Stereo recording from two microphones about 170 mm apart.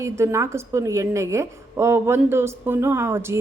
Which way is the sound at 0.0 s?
15° right (ahead or behind).